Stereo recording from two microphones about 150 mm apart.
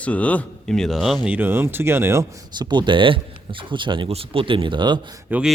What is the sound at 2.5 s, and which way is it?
Speech, 30° right (ahead or behind).